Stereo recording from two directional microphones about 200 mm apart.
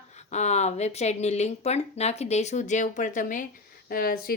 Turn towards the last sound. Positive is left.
turn(degrees=50)  # may be behind; listen again after turning